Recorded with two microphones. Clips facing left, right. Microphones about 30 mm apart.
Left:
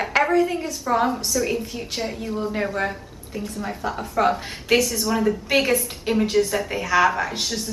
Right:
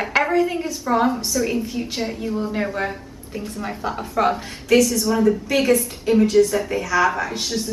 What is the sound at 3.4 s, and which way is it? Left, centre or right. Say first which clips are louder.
Speech: right 1 dB; centre.